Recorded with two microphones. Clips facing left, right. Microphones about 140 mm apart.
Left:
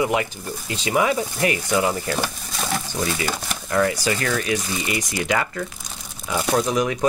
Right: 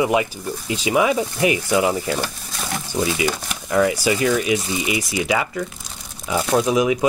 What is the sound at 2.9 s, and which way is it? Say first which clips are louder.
Speech: right 4 dB; 15° right (ahead or behind).